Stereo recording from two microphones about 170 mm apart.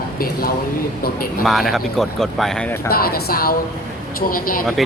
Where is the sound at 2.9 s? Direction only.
60° left (ahead or behind).